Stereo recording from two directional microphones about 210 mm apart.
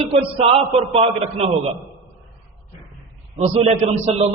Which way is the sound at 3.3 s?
30° right (ahead or behind).